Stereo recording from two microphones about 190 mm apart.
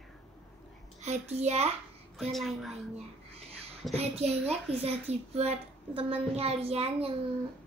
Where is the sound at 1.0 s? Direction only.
35° right (ahead or behind).